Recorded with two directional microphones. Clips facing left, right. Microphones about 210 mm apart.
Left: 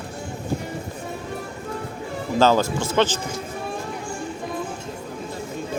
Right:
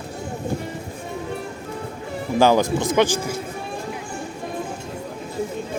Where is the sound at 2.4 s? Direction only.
15° right (ahead or behind).